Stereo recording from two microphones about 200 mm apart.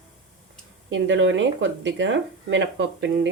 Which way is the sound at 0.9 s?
70° right (ahead or behind).